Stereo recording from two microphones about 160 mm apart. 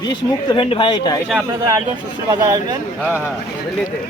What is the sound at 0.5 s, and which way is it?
Speech, 30° left (ahead or behind).